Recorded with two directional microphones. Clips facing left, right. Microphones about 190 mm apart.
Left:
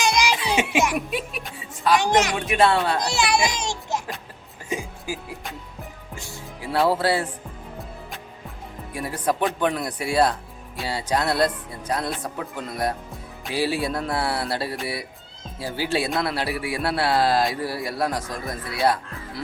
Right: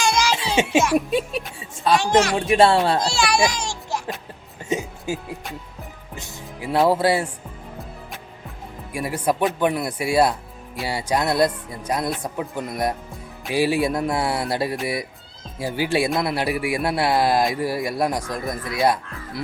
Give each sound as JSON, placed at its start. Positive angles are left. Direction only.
{"t": 0.0, "sound": "music", "side_deg": 15}
{"t": 0.6, "sound": "a woman's voice", "side_deg": -25}
{"t": 2.0, "sound": "speech", "side_deg": 20}
{"t": 2.5, "sound": "speech", "side_deg": -30}
{"t": 3.0, "sound": "a child's voice", "side_deg": 20}
{"t": 4.7, "sound": "music", "side_deg": -25}
{"t": 8.9, "sound": "speech", "side_deg": -10}